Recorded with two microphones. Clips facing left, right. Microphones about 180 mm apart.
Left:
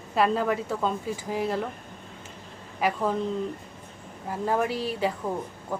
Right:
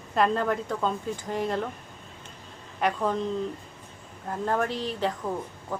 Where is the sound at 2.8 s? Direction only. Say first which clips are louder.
Even; 5° left (ahead or behind).